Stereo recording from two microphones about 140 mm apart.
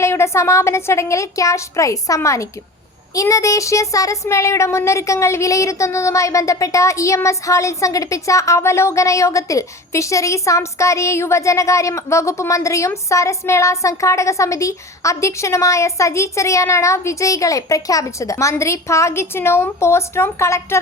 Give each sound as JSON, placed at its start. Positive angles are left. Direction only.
{"t": 0.0, "sound": "speech", "side_deg": 20}